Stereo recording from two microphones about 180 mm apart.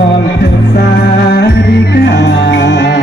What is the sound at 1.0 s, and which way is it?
Music, 60° left (ahead or behind).